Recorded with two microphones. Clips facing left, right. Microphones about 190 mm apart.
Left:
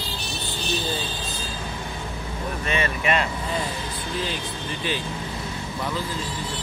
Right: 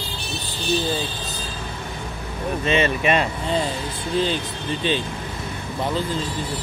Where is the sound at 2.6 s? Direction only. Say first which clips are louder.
Right 6 dB; 25° right (ahead or behind).